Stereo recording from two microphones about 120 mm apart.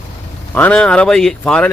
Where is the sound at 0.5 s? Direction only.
10° left (ahead or behind).